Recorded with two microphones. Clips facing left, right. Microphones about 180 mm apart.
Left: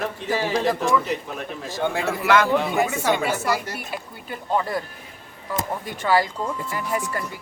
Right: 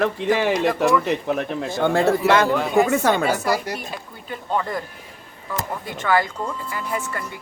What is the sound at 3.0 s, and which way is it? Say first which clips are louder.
Speech: right 3 dB; 60° right (ahead or behind).